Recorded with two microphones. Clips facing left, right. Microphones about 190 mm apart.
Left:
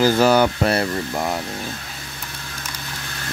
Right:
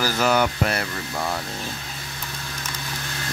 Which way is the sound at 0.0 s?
30° left (ahead or behind).